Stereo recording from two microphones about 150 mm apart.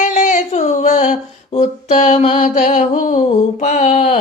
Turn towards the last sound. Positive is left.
turn(degrees=55)  # may be behind; listen again after turning